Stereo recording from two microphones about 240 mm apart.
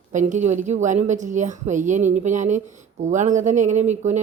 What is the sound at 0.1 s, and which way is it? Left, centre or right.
Speech, right.